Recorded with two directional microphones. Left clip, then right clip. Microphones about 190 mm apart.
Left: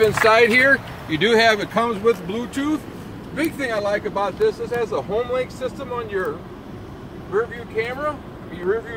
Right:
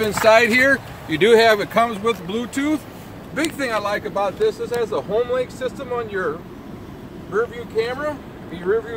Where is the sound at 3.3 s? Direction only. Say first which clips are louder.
Right 1 dB; 40° right (ahead or behind).